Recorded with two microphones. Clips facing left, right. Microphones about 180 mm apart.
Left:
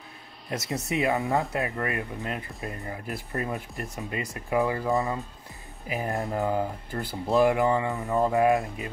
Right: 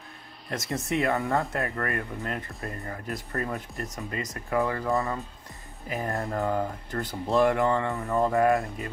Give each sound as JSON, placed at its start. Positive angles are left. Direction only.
{"t": 0.5, "sound": "speech", "side_deg": 5}
{"t": 1.6, "sound": "speech", "side_deg": 10}